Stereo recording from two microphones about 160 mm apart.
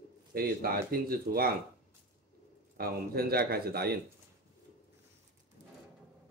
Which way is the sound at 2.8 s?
70° right (ahead or behind).